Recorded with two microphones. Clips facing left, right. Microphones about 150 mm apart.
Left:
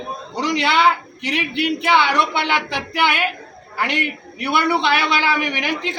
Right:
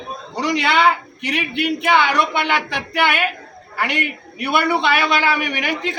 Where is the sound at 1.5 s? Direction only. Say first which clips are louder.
Even; 50° right (ahead or behind).